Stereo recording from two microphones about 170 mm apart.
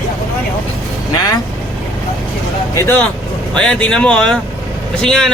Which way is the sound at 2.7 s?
10° left (ahead or behind).